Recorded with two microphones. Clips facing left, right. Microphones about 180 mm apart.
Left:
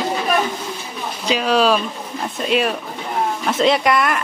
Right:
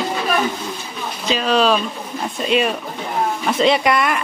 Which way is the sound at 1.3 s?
10° left (ahead or behind).